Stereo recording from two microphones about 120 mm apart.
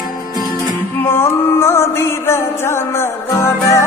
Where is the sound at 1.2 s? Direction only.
20° left (ahead or behind).